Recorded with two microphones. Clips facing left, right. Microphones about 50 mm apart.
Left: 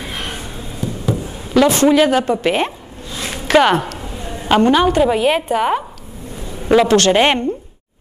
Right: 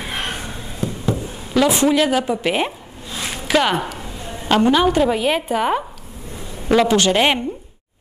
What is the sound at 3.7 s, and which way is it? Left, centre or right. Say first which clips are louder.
Speech: left 4 dB; centre.